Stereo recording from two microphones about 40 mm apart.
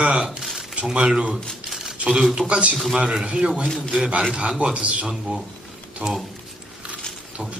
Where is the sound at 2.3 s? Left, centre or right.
Right.